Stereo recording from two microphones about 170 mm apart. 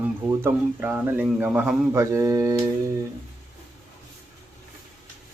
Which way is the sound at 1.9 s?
15° right (ahead or behind).